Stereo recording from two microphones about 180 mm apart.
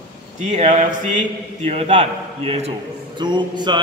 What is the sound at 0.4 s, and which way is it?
A man's voice, 40° right (ahead or behind).